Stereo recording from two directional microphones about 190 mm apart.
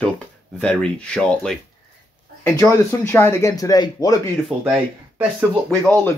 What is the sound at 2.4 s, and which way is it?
Speech, 15° left (ahead or behind).